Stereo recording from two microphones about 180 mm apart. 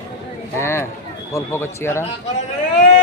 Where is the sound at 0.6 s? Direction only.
15° left (ahead or behind).